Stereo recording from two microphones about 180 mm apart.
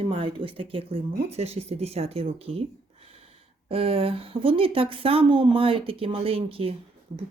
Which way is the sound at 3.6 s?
30° right (ahead or behind).